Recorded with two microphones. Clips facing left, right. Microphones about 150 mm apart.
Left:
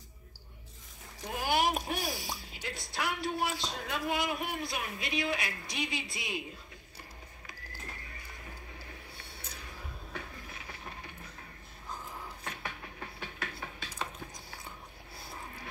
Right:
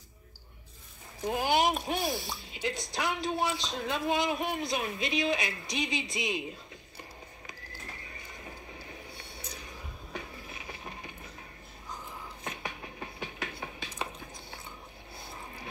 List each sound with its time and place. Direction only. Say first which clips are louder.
1.2 s speech: right 3 dB; 20° right (ahead or behind)
10.1 s train: right 3 dB; 15° right (ahead or behind)
12.4 s a sound: right 5 dB; 15° right (ahead or behind)